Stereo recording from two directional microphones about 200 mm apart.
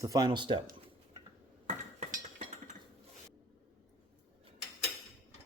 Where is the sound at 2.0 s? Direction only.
40° right (ahead or behind).